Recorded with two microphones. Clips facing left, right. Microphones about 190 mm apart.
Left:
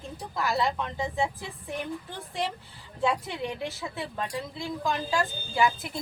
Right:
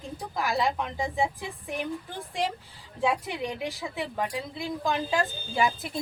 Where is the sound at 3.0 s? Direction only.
10° right (ahead or behind).